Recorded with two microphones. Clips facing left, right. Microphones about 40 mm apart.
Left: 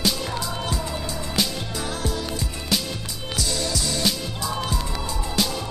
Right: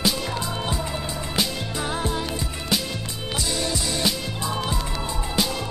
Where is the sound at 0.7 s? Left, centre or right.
Centre.